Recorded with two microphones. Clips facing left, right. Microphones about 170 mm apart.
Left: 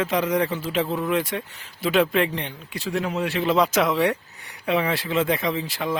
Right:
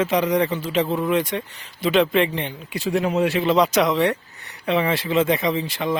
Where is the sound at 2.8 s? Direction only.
20° right (ahead or behind).